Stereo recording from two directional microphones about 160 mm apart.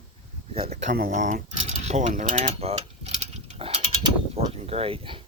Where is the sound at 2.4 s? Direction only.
40° right (ahead or behind).